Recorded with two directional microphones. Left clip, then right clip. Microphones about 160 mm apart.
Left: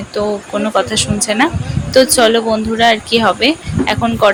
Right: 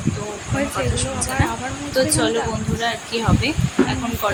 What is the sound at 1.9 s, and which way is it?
Speech, 50° left (ahead or behind).